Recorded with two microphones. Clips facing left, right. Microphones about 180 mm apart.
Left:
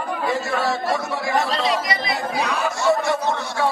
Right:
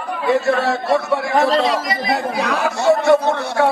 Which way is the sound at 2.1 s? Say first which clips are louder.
Right 5 dB; 65° right (ahead or behind).